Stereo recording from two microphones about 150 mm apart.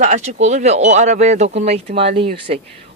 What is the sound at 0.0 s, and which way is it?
Speech, 55° right (ahead or behind).